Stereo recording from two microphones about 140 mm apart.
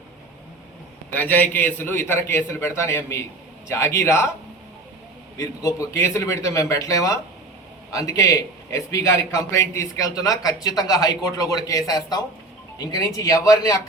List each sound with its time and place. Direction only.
1.1 s a man's voice: 15° left (ahead or behind)
5.4 s a man's voice: 20° left (ahead or behind)